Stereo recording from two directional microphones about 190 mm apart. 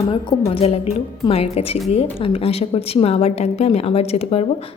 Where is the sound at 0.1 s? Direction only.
30° left (ahead or behind).